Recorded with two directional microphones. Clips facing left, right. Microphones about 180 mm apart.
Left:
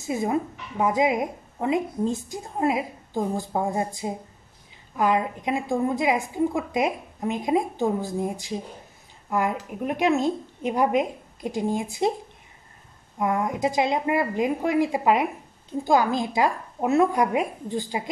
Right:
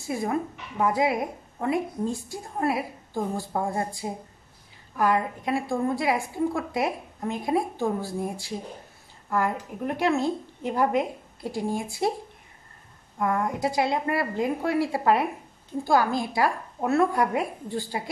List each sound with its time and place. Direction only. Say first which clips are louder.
0.0 s a woman's voice: left 2 dB; 20° left (ahead or behind)
13.2 s a woman's voice: left 2 dB; 20° left (ahead or behind)